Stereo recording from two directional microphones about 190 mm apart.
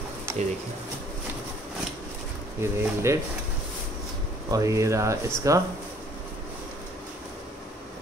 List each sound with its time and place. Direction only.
0.3 s pigeon: 15° right (ahead or behind)
2.6 s speech: 15° right (ahead or behind)
4.5 s speech: 15° right (ahead or behind)